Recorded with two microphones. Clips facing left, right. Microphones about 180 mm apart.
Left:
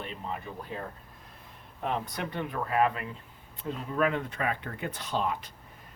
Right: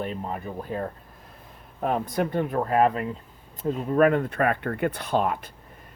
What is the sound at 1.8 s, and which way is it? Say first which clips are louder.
Speech: right 7 dB; 45° right (ahead or behind).